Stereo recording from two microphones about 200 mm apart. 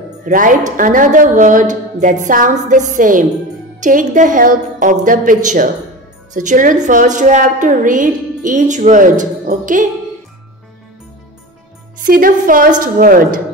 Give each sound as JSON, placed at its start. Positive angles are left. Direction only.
{"t": 0.2, "sound": "a woman's voice", "side_deg": -40}
{"t": 12.0, "sound": "a woman's voice", "side_deg": -45}